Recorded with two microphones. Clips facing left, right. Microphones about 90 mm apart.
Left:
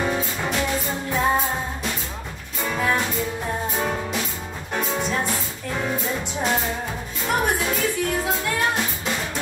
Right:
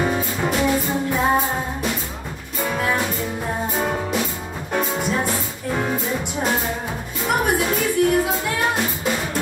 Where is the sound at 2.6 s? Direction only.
5° right (ahead or behind).